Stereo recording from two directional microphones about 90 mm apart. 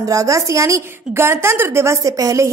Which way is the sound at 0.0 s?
40° right (ahead or behind).